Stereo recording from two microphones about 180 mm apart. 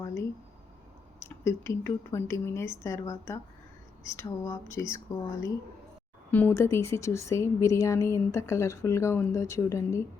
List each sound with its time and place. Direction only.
0.0 s a sound: 15° left (ahead or behind)
1.5 s speech: 15° left (ahead or behind)
6.3 s speech: 15° left (ahead or behind)